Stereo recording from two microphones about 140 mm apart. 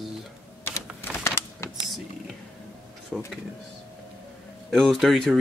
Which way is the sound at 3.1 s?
5° right (ahead or behind).